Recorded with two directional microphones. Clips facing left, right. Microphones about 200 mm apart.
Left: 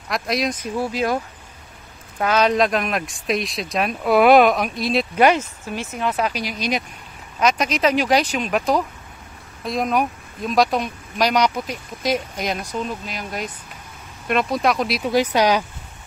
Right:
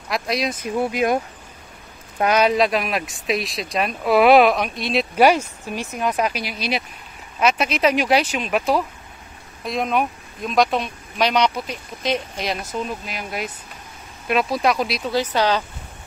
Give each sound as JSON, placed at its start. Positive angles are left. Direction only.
{"t": 0.1, "sound": "speech", "side_deg": 0}
{"t": 0.7, "sound": "speech", "side_deg": -15}
{"t": 2.5, "sound": "speech", "side_deg": 0}
{"t": 7.3, "sound": "speech", "side_deg": -5}
{"t": 15.0, "sound": "speech", "side_deg": 15}